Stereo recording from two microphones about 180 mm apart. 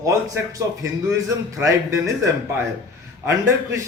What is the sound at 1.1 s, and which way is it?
Speech, 15° right (ahead or behind).